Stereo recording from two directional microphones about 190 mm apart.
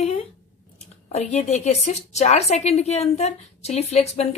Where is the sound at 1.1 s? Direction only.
35° left (ahead or behind).